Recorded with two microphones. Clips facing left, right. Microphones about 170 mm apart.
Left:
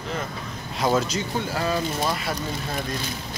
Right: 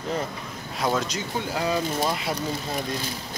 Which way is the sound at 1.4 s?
15° right (ahead or behind).